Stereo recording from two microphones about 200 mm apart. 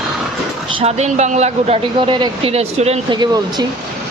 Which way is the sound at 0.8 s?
35° right (ahead or behind).